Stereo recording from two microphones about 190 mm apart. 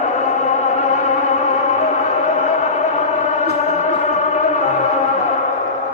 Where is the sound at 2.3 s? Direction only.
40° left (ahead or behind).